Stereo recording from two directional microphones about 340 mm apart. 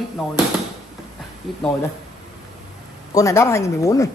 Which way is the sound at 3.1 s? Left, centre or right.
Centre.